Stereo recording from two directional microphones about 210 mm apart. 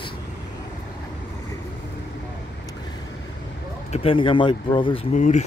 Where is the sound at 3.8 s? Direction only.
30° left (ahead or behind).